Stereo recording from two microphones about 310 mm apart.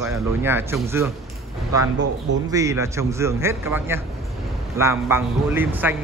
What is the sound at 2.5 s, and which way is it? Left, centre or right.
A man's voice, centre.